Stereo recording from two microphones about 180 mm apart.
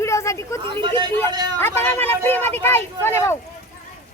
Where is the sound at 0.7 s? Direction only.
25° right (ahead or behind).